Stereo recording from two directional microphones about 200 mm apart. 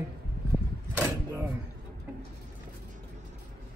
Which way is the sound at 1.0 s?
15° right (ahead or behind).